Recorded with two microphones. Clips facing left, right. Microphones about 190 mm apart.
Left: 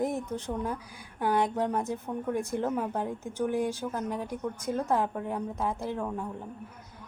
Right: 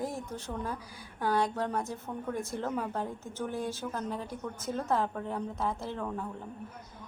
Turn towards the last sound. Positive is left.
turn(degrees=15)  # may be behind; listen again after turning